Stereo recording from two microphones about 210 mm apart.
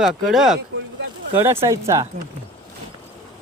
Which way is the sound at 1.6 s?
15° right (ahead or behind).